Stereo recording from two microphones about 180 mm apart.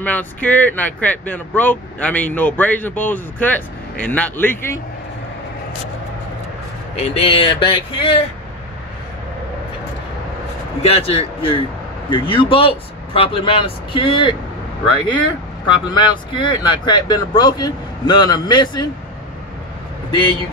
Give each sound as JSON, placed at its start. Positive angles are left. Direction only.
{"t": 0.0, "sound": "speech", "side_deg": 10}
{"t": 7.0, "sound": "speech", "side_deg": 30}
{"t": 10.9, "sound": "speech", "side_deg": 30}